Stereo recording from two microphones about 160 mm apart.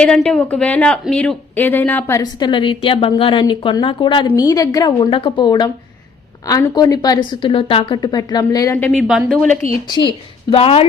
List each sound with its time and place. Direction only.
0.0 s speech: 5° left (ahead or behind)
2.4 s a woman's voice: 30° left (ahead or behind)
8.9 s a woman's voice: centre (ahead or behind)
9.8 s a woman's voice: 30° left (ahead or behind)